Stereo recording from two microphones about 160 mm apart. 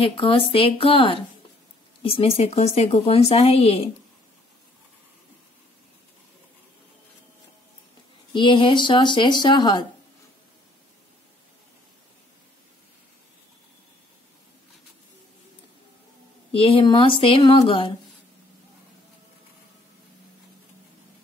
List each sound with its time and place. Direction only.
0.0 s speech: 35° left (ahead or behind)
8.3 s speech: 30° left (ahead or behind)
16.5 s speech: 35° left (ahead or behind)